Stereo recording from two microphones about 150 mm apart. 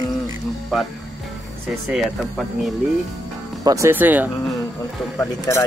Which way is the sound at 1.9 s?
Centre (ahead or behind).